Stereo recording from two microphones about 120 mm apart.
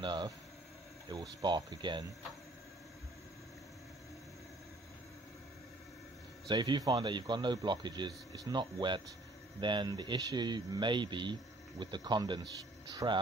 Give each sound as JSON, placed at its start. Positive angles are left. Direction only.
{"t": 0.0, "sound": "a man's voice", "side_deg": -40}
{"t": 6.4, "sound": "a man's voice", "side_deg": -40}